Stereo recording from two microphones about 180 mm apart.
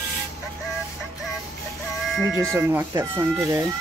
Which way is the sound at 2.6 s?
10° right (ahead or behind).